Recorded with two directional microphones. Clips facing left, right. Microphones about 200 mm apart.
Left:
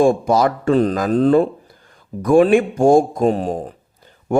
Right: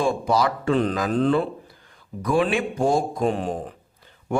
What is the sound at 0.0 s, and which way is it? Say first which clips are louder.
Speech: left 7 dB; 45° left (ahead or behind).